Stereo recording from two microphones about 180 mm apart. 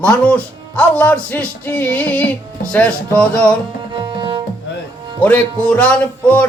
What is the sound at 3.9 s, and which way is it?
Tabla, 25° right (ahead or behind).